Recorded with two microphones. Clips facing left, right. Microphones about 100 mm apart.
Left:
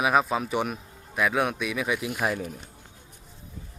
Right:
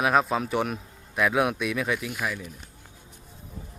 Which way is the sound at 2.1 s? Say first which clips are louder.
Left 4 dB; 35° left (ahead or behind).